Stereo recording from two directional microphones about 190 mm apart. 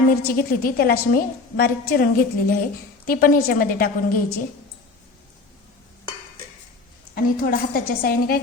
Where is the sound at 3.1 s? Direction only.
45° left (ahead or behind).